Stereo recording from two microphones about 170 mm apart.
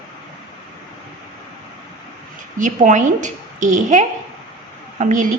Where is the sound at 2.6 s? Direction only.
50° right (ahead or behind).